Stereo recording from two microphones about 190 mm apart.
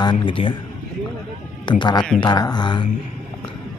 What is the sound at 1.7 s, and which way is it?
A man's voice, 25° left (ahead or behind).